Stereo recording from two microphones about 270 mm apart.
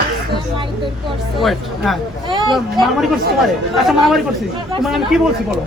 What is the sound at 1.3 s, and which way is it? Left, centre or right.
Speech, centre.